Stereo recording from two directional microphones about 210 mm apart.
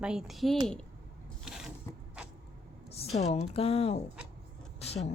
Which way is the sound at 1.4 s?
Centre (ahead or behind).